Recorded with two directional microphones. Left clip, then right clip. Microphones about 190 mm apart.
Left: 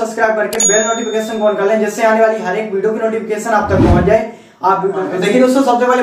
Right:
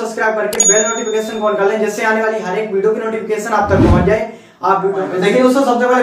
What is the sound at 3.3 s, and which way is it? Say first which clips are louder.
Speech: right 2 dB; centre (ahead or behind).